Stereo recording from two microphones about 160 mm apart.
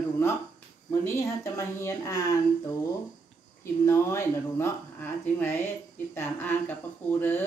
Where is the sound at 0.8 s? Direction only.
20° left (ahead or behind).